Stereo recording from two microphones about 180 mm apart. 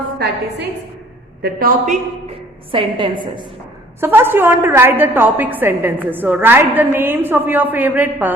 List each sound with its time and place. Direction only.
0.2 s a woman's voice: 70° right (ahead or behind)
1.4 s a man's voice: 60° right (ahead or behind)
2.7 s a woman's voice: 30° right (ahead or behind)
4.0 s a woman's voice: 10° right (ahead or behind)